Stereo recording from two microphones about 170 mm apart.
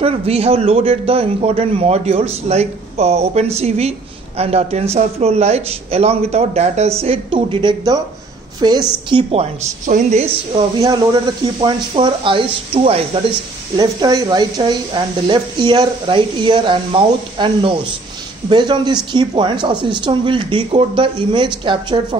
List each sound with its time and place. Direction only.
0.0 s a man's voice: 35° right (ahead or behind)
9.3 s a man's voice: 40° right (ahead or behind)
10.8 s speech: 20° right (ahead or behind)